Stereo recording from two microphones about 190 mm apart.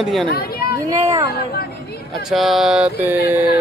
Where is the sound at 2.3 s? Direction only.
Centre (ahead or behind).